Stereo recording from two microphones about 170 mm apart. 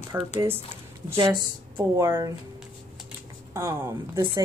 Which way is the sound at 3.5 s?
15° right (ahead or behind).